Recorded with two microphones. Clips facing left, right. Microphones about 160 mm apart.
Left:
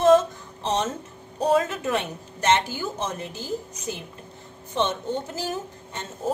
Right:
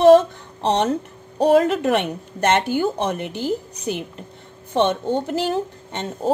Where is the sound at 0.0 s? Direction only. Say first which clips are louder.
Right 6 dB; 70° right (ahead or behind).